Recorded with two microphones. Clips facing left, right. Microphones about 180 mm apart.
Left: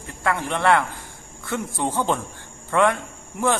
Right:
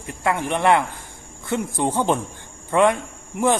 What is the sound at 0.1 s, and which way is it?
A man's voice, 15° right (ahead or behind).